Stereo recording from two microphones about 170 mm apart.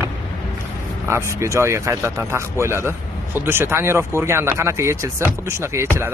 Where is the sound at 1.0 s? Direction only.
15° right (ahead or behind).